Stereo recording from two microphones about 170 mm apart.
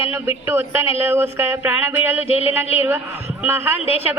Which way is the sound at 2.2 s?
35° left (ahead or behind).